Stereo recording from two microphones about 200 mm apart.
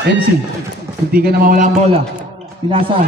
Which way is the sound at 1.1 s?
50° right (ahead or behind).